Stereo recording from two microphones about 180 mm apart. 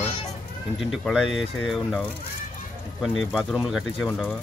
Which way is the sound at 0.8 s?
Centre (ahead or behind).